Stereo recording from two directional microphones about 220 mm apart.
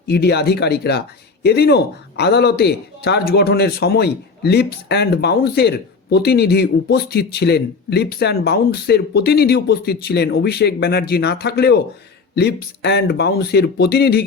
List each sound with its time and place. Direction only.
0.1 s speech: 50° left (ahead or behind)